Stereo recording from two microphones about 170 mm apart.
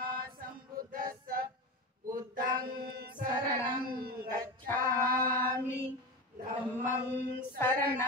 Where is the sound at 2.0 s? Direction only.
55° right (ahead or behind).